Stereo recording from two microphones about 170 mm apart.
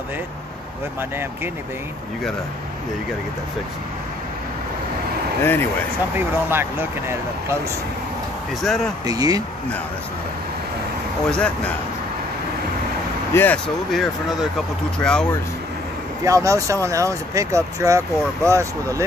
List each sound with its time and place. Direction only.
5.4 s speech: 15° left (ahead or behind)
6.1 s speech: 10° right (ahead or behind)
8.6 s speech: centre (ahead or behind)
9.0 s speech: 20° right (ahead or behind)
11.2 s speech: 5° left (ahead or behind)
13.3 s speech: 15° left (ahead or behind)
13.9 s speech: centre (ahead or behind)
16.3 s speech: 20° right (ahead or behind)